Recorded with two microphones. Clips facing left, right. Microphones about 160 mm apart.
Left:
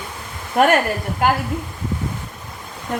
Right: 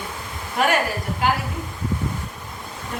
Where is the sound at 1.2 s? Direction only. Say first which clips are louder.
Left 4 dB; 50° left (ahead or behind).